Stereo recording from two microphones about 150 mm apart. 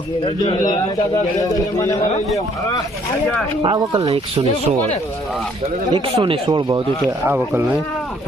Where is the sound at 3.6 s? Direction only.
30° right (ahead or behind).